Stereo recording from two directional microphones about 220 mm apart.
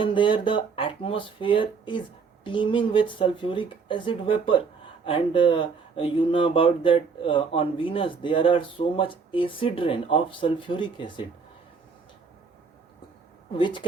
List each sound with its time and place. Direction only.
0.0 s speech: 20° left (ahead or behind)
13.6 s speech: 20° left (ahead or behind)